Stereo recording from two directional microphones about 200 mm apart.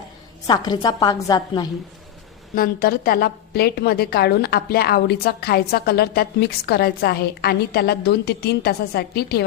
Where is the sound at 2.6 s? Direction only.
45° left (ahead or behind).